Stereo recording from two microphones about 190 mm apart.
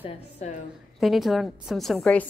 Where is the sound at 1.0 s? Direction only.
Centre (ahead or behind).